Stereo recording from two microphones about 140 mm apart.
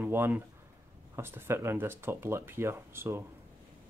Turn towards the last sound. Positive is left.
turn(degrees=-20)  # may be behind; listen again after turning